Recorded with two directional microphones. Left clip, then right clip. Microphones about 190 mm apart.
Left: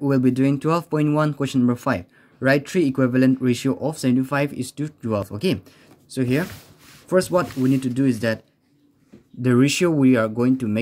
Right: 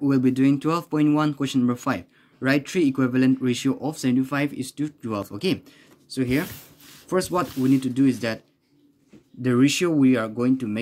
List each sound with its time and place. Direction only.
0.0 s speech: 30° left (ahead or behind)
9.4 s speech: 35° left (ahead or behind)